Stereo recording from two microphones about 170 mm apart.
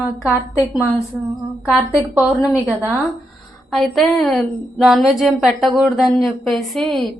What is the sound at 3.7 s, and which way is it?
A woman's voice, centre (ahead or behind).